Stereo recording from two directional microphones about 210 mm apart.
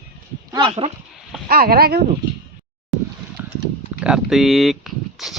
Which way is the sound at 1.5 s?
45° right (ahead or behind).